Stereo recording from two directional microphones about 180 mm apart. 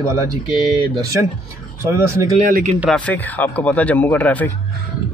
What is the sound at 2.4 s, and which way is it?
Speech, 55° right (ahead or behind).